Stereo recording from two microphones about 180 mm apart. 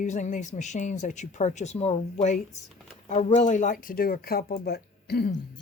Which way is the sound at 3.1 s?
40° left (ahead or behind).